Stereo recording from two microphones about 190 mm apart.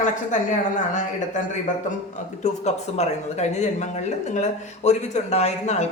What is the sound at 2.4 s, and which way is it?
Speech, 35° left (ahead or behind).